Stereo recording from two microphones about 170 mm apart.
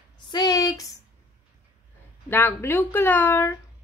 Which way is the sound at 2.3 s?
15° left (ahead or behind).